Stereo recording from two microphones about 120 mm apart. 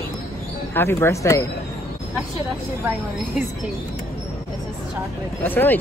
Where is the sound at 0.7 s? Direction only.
20° left (ahead or behind).